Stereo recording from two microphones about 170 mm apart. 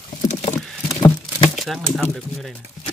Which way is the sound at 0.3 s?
40° left (ahead or behind).